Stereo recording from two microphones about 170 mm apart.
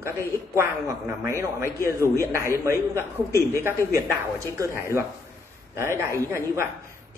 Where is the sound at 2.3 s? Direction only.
15° right (ahead or behind).